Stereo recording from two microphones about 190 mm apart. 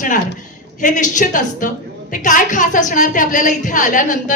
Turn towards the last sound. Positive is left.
turn(degrees=45)  # may be behind; listen again after turning